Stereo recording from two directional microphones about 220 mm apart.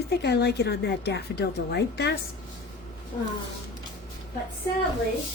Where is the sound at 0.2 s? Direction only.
50° left (ahead or behind).